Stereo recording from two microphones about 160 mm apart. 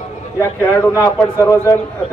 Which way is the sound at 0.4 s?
20° left (ahead or behind).